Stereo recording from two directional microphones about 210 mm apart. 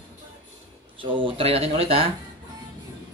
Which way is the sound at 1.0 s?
25° right (ahead or behind).